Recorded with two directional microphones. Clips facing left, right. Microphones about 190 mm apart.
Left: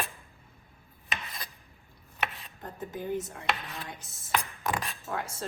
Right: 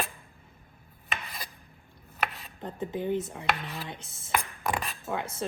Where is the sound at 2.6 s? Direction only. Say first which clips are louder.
Right 5 dB; 25° right (ahead or behind).